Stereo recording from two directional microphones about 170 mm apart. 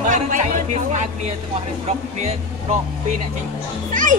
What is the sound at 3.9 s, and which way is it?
Music, 50° right (ahead or behind).